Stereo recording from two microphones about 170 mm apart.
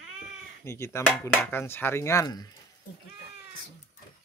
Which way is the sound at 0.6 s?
15° left (ahead or behind).